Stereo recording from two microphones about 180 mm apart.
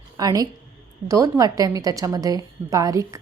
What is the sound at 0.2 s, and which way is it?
A woman's voice, 20° right (ahead or behind).